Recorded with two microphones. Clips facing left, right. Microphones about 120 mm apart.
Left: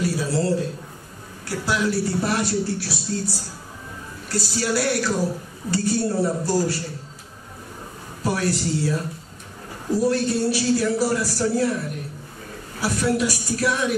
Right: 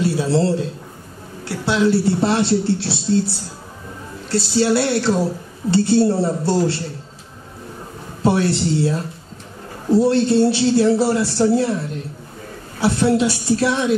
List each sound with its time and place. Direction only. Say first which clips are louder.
0.0 s a man's voice: right 5 dB; 25° right (ahead or behind)
8.2 s a woman's voice: right 6 dB; 25° right (ahead or behind)